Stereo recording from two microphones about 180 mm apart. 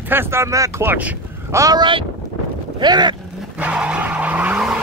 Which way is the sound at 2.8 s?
25° right (ahead or behind).